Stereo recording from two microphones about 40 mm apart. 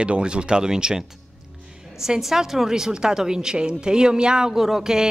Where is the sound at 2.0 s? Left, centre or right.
Centre.